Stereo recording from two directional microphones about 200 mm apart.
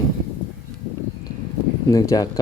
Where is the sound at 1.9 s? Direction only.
15° left (ahead or behind).